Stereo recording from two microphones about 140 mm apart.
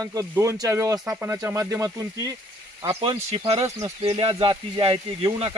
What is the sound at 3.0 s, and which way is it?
Speech, 40° right (ahead or behind).